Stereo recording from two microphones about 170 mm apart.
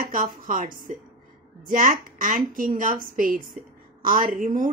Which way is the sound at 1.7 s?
50° right (ahead or behind).